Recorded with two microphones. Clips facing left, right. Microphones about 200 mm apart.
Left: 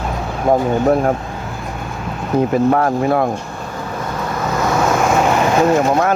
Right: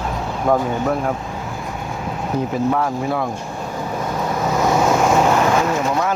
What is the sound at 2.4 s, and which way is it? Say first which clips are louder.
Speech: left 6 dB; 60° left (ahead or behind).